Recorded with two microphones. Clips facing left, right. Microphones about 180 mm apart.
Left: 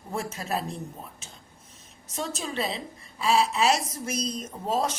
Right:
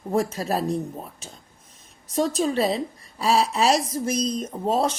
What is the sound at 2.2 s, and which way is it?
Speech, 35° right (ahead or behind).